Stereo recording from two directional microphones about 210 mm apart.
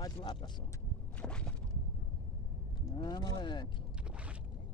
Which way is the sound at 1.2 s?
5° left (ahead or behind).